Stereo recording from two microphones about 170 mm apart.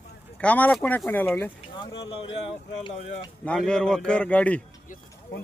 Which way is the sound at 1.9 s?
35° left (ahead or behind).